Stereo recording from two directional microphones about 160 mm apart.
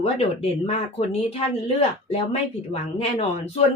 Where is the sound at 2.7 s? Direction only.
40° left (ahead or behind).